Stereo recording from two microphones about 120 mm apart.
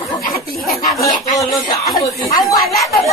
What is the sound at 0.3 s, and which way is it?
Speech, centre (ahead or behind).